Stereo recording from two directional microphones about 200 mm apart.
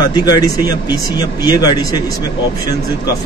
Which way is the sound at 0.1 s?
20° left (ahead or behind).